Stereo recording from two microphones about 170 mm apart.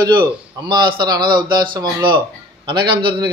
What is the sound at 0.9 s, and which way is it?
A man's voice, 25° right (ahead or behind).